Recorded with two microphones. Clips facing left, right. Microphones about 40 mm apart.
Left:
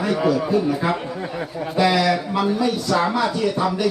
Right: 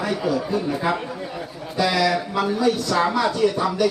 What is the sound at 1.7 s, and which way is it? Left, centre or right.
Speech, centre.